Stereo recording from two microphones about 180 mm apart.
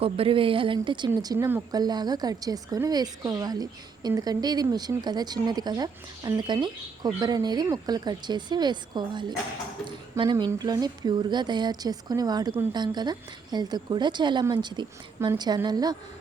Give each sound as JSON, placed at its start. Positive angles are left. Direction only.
{"t": 0.0, "sound": "a woman's voice", "side_deg": -30}